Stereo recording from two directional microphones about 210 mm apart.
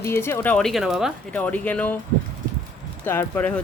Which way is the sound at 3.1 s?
10° left (ahead or behind).